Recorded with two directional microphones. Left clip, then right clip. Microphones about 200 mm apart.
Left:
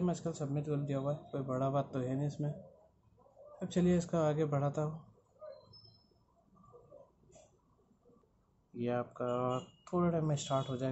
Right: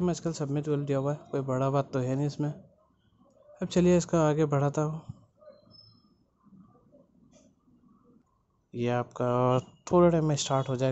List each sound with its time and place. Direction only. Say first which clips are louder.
0.0 s speech: right 6 dB; 45° right (ahead or behind)
3.5 s speech: right 9 dB; 50° right (ahead or behind)
8.7 s speech: right 7 dB; 55° right (ahead or behind)